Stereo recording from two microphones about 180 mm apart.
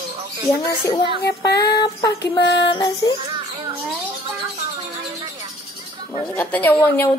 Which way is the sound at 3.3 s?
25° right (ahead or behind).